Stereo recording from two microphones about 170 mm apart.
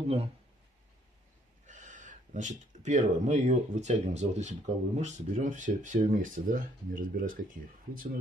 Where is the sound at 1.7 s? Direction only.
45° right (ahead or behind).